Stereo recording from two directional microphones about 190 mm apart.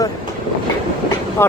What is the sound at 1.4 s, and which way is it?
Speech, 10° left (ahead or behind).